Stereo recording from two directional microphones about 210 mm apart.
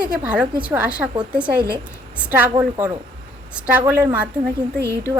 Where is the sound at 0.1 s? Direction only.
5° right (ahead or behind).